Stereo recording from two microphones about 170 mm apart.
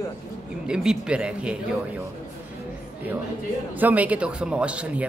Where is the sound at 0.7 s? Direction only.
5° right (ahead or behind).